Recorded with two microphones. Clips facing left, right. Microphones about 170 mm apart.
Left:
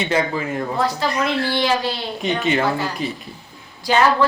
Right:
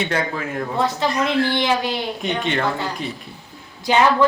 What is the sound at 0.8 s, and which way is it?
A woman's voice, 20° right (ahead or behind).